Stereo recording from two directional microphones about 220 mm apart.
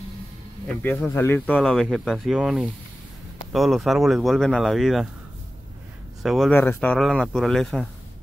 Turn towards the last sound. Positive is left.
turn(degrees=0)  # may be behind; listen again after turning